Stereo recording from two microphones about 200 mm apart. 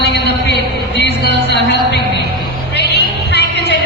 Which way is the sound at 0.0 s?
60° left (ahead or behind).